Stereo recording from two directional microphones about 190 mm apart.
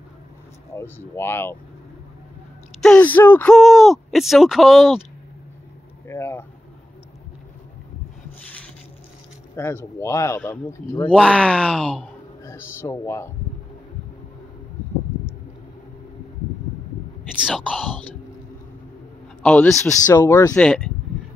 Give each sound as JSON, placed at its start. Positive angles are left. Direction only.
{"t": 0.7, "sound": "speech", "side_deg": 10}
{"t": 2.8, "sound": "speech", "side_deg": 5}
{"t": 6.0, "sound": "vehicle", "side_deg": 15}
{"t": 9.6, "sound": "speech", "side_deg": 15}
{"t": 12.4, "sound": "speech", "side_deg": 15}
{"t": 17.3, "sound": "speech", "side_deg": -5}
{"t": 19.4, "sound": "speech", "side_deg": 10}
{"t": 20.5, "sound": "speech", "side_deg": 5}